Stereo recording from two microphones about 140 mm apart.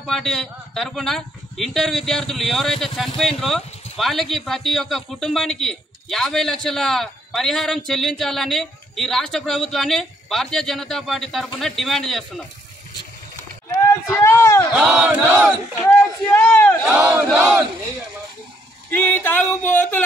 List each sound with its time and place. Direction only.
0.0 s speech: 5° left (ahead or behind)
14.0 s a sound: 20° left (ahead or behind)
14.8 s speech: 5° right (ahead or behind)
15.9 s a sound: 15° left (ahead or behind)
16.8 s speech: 5° right (ahead or behind)
18.9 s speech: 15° left (ahead or behind)